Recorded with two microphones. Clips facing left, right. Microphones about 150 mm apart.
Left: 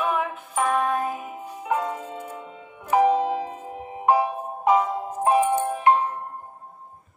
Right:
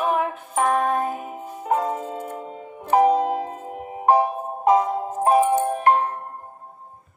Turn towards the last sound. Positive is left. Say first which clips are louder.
# right 1 dB
turn(degrees=-50)  # may be behind; listen again after turning